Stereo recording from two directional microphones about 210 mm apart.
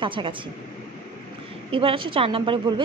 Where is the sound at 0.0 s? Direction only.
25° right (ahead or behind).